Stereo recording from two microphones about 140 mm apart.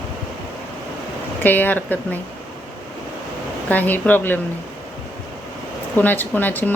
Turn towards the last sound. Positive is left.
turn(degrees=15)  # may be behind; listen again after turning